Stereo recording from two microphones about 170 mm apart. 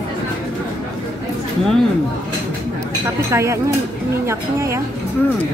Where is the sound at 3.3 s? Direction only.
15° right (ahead or behind).